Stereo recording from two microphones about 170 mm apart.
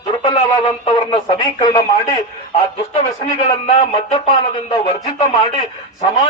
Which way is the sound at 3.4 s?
35° left (ahead or behind).